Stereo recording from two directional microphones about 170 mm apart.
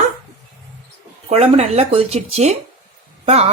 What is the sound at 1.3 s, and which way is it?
Speech, 40° right (ahead or behind).